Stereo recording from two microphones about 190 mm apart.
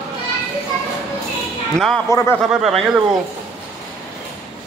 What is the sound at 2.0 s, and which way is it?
Speech, 15° left (ahead or behind).